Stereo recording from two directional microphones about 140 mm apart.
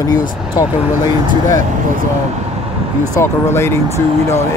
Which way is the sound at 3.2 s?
20° left (ahead or behind).